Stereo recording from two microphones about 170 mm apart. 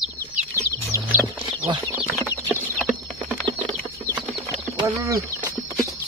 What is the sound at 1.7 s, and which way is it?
Bird, 25° right (ahead or behind).